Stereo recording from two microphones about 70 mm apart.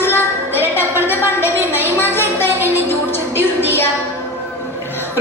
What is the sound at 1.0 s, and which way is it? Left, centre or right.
Music, left.